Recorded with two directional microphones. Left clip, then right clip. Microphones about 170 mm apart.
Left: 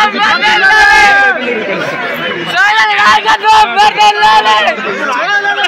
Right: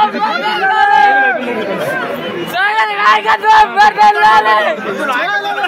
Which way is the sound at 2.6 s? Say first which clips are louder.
Left 4 dB; 25° left (ahead or behind).